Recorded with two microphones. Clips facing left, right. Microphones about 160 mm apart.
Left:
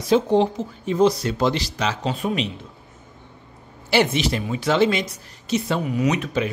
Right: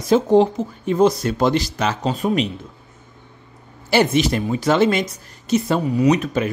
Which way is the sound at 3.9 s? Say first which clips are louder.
Right 3 dB; 45° right (ahead or behind).